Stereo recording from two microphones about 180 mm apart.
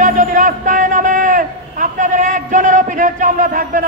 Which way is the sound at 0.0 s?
45° right (ahead or behind).